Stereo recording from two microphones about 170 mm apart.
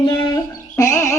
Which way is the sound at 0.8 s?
20° left (ahead or behind).